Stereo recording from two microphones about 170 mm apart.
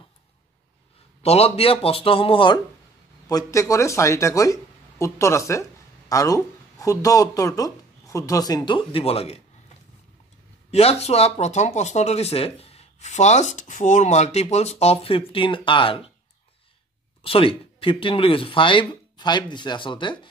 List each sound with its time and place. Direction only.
1.2 s speech: 35° left (ahead or behind)
10.7 s speech: 35° left (ahead or behind)
17.2 s speech: 30° left (ahead or behind)